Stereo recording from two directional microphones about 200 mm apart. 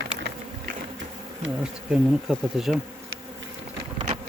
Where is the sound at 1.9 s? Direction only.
5° right (ahead or behind).